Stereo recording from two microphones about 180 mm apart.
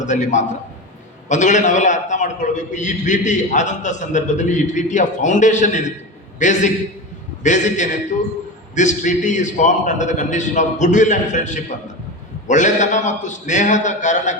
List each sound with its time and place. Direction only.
0.0 s a man's voice: 40° left (ahead or behind)